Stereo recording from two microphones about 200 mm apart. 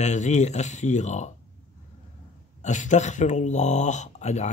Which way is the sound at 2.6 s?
35° left (ahead or behind).